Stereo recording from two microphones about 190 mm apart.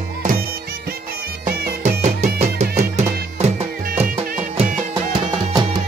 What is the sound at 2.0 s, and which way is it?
Music, 35° right (ahead or behind).